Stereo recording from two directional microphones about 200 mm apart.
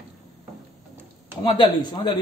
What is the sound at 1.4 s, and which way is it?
Speech, 20° left (ahead or behind).